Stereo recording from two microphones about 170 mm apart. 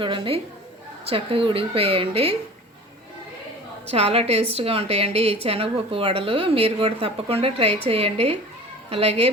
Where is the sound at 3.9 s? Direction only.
35° right (ahead or behind).